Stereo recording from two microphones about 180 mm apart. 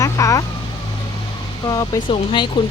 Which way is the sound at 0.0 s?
20° left (ahead or behind).